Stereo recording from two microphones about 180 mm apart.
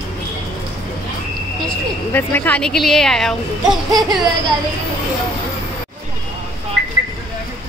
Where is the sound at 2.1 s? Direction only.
10° left (ahead or behind).